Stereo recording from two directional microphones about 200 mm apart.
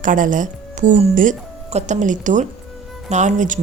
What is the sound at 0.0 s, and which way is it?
A woman's voice, 40° right (ahead or behind).